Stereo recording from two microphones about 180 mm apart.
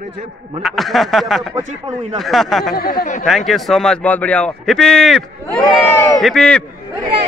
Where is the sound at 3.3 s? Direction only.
Centre (ahead or behind).